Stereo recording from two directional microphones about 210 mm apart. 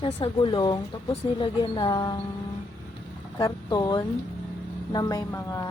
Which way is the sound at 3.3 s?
20° left (ahead or behind).